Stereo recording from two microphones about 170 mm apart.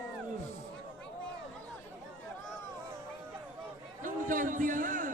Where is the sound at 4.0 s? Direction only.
50° right (ahead or behind).